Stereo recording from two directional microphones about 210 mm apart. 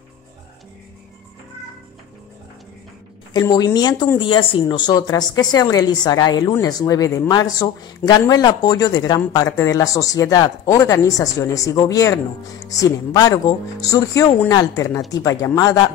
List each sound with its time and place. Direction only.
3.3 s speech: 20° left (ahead or behind)